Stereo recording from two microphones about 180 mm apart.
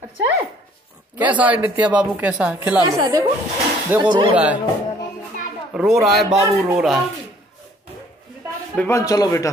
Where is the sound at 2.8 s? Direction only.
20° right (ahead or behind).